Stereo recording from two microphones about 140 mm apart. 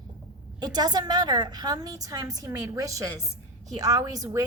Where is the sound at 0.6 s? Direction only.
30° right (ahead or behind).